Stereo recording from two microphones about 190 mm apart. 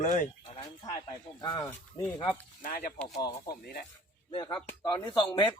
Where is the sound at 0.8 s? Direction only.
20° left (ahead or behind).